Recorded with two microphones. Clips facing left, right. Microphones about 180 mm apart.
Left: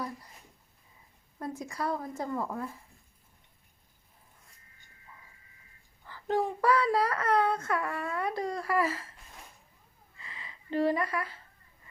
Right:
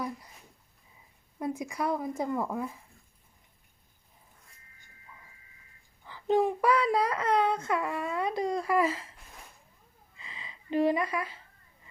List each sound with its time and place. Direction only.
1.4 s speech: 10° right (ahead or behind)
6.1 s speech: 15° right (ahead or behind)
10.2 s a sound: 20° right (ahead or behind)